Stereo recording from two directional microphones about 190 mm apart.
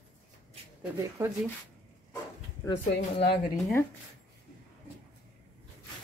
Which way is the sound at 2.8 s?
30° left (ahead or behind).